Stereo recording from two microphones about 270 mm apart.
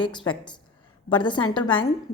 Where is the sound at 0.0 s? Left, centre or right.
Centre.